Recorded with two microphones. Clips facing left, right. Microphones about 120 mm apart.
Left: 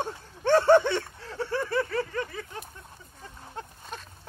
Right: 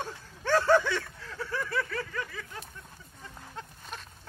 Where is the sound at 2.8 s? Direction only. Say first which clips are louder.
Left 2 dB; 25° left (ahead or behind).